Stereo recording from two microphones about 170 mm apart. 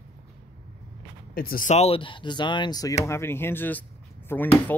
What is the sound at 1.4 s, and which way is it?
Speech, 55° left (ahead or behind).